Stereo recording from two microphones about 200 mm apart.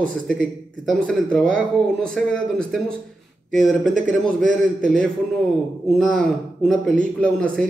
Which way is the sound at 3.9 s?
40° right (ahead or behind).